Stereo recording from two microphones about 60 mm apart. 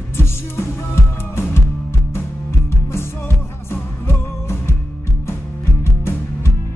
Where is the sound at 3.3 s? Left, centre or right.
Left.